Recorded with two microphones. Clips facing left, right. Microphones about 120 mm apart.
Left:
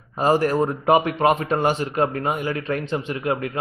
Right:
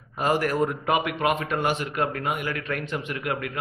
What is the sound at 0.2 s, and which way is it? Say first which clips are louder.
Speech: left 4 dB; 30° left (ahead or behind).